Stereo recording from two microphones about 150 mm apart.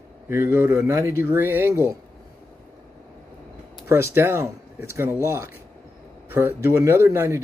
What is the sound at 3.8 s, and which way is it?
Speech, 15° right (ahead or behind).